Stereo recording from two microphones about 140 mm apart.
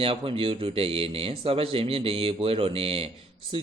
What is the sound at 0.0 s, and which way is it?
A man's voice, 40° right (ahead or behind).